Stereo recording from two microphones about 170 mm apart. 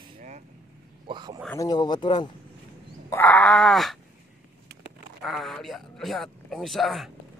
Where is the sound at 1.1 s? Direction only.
25° right (ahead or behind).